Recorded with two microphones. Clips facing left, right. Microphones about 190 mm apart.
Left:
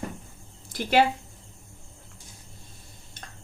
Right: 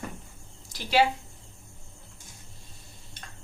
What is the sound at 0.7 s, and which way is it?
Speech, 55° left (ahead or behind).